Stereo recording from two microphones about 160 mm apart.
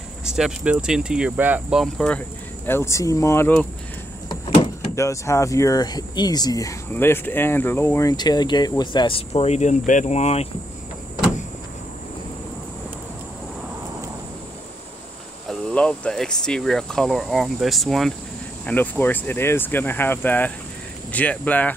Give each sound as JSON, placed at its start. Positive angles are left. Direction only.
{"t": 0.2, "sound": "speech", "side_deg": -5}
{"t": 4.9, "sound": "speech", "side_deg": 20}
{"t": 15.7, "sound": "speech", "side_deg": 5}
{"t": 18.7, "sound": "speech", "side_deg": 10}